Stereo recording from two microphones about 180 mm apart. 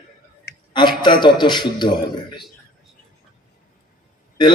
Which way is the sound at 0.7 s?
25° left (ahead or behind).